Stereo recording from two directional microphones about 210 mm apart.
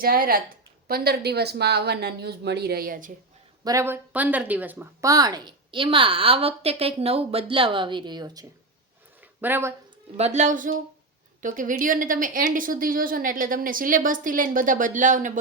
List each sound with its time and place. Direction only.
0.0 s speech: 45° right (ahead or behind)
3.6 s speech: 15° right (ahead or behind)
10.2 s speech: 30° right (ahead or behind)